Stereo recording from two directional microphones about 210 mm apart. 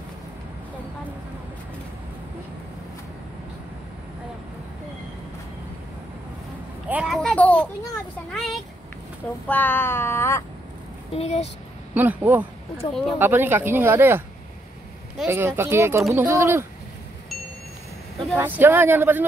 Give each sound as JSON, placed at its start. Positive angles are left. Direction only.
{"t": 6.9, "sound": "a child's voice", "side_deg": 0}
{"t": 8.3, "sound": "a sound", "side_deg": 0}
{"t": 11.1, "sound": "speech", "side_deg": 30}
{"t": 11.9, "sound": "speech", "side_deg": -10}
{"t": 18.2, "sound": "speech", "side_deg": -10}